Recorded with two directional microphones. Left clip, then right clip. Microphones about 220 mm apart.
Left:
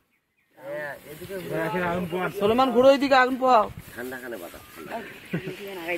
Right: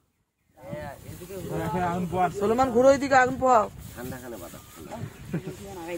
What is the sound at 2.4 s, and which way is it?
A man's voice, 30° left (ahead or behind).